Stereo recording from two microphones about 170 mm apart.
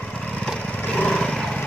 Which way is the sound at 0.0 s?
5° left (ahead or behind).